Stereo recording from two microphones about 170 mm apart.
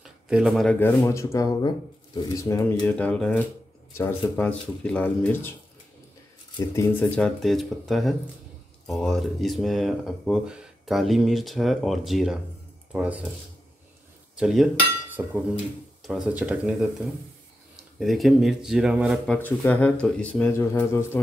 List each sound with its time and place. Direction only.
0.0 s a sound: 5° right (ahead or behind)
0.7 s speech: 15° left (ahead or behind)
2.8 s speech: 5° left (ahead or behind)
6.7 s speech: 15° left (ahead or behind); by 13.3 s 5° right (ahead or behind)
14.3 s cutlery: centre (ahead or behind)
15.2 s speech: 10° right (ahead or behind)
17.9 s speech: centre (ahead or behind)
19.2 s speech: 10° left (ahead or behind)